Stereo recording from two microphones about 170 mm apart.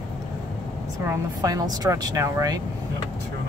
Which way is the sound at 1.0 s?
20° right (ahead or behind).